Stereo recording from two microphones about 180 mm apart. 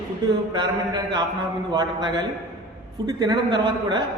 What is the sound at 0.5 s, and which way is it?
A man's voice, 25° right (ahead or behind).